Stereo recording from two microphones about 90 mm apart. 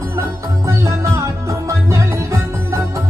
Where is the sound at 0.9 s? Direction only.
30° right (ahead or behind).